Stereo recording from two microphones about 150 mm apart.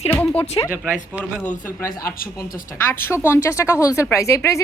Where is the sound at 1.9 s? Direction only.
75° left (ahead or behind).